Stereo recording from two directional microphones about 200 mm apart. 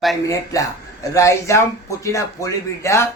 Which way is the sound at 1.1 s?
15° left (ahead or behind).